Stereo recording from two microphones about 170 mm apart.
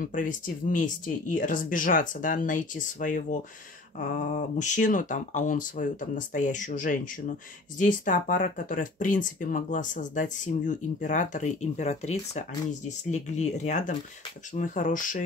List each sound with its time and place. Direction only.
0.0 s speech: 50° left (ahead or behind)